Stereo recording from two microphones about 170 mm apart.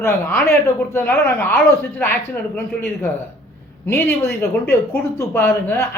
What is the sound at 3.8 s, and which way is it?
A man's voice, 15° left (ahead or behind).